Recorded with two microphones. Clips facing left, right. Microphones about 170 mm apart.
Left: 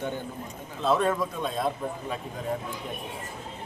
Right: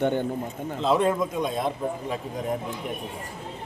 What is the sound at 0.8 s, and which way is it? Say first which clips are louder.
Speech: right 2 dB; 20° right (ahead or behind).